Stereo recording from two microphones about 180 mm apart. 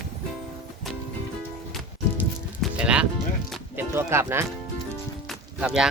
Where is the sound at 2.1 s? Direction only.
5° right (ahead or behind).